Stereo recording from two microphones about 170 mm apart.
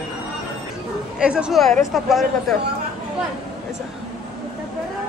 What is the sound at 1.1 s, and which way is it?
A woman's voice, 5° right (ahead or behind).